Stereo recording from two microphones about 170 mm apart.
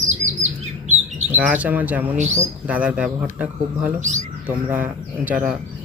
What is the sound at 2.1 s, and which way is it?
Speech, 45° right (ahead or behind).